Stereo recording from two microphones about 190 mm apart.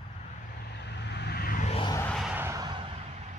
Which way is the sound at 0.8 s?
65° left (ahead or behind).